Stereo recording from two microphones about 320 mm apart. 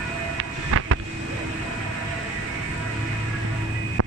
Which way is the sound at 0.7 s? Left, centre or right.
Right.